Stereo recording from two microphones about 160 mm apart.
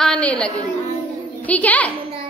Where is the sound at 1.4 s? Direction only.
10° left (ahead or behind).